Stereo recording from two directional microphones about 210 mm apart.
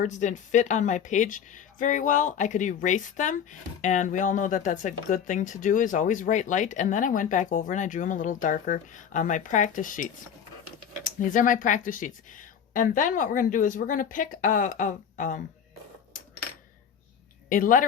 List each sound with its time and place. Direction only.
0.0 s speech: 35° left (ahead or behind)
17.5 s speech: 40° left (ahead or behind)